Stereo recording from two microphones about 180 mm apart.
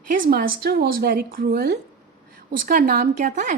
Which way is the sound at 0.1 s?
55° right (ahead or behind).